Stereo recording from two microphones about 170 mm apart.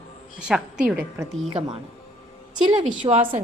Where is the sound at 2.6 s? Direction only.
30° right (ahead or behind).